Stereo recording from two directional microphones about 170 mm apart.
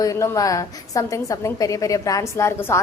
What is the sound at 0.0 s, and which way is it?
A woman's voice, 20° left (ahead or behind).